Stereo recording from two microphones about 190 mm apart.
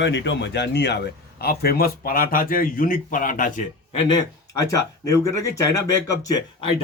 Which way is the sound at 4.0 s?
25° left (ahead or behind).